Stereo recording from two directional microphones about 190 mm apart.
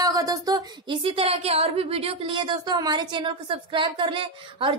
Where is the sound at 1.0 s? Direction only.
30° right (ahead or behind).